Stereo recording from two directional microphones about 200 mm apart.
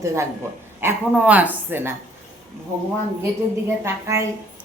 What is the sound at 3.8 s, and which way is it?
Speech, 15° right (ahead or behind).